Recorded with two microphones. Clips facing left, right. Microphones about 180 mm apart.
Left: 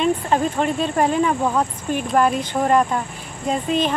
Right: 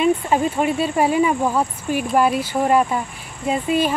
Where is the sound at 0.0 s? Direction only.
5° right (ahead or behind).